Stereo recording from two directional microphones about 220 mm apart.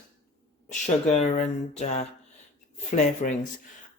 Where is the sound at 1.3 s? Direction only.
30° left (ahead or behind).